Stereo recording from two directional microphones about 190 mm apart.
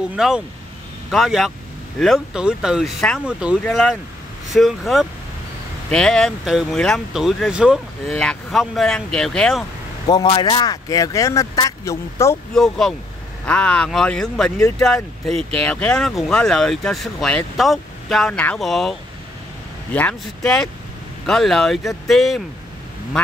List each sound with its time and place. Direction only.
0.1 s speech: 5° right (ahead or behind)
10.0 s speech: 25° left (ahead or behind)
12.5 s speech: 5° left (ahead or behind)